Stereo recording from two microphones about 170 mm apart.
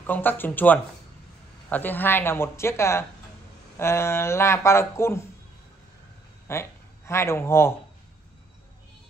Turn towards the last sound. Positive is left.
turn(degrees=15)  # may be behind; listen again after turning